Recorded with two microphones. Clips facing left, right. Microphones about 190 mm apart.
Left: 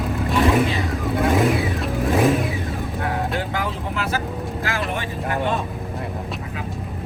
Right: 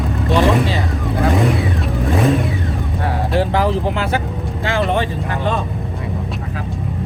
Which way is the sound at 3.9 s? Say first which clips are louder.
Right 4 dB; 30° right (ahead or behind).